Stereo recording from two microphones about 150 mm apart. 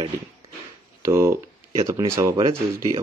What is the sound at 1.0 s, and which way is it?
Speech, 15° right (ahead or behind).